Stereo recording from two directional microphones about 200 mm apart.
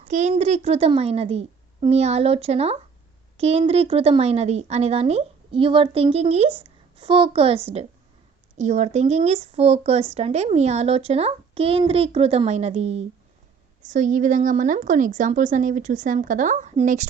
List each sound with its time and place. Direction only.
0.1 s a woman's voice: 35° right (ahead or behind)